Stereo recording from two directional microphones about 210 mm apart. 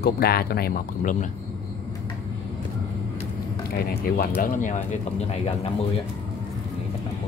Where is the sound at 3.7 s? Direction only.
45° left (ahead or behind); by 5.7 s 30° left (ahead or behind).